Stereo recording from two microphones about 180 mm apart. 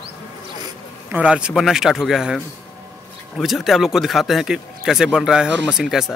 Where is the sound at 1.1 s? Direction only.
5° right (ahead or behind).